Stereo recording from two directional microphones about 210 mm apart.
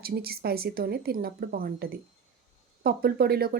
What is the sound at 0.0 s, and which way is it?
Speech, 45° right (ahead or behind).